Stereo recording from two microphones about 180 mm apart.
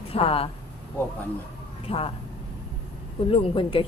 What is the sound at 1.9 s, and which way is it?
Speech, 30° left (ahead or behind).